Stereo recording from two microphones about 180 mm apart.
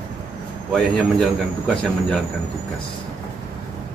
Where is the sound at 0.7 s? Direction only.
Centre (ahead or behind).